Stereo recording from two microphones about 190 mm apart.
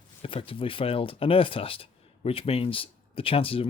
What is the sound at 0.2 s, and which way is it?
Speech, 30° left (ahead or behind).